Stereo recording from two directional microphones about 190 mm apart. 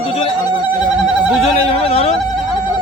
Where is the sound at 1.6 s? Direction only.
30° left (ahead or behind).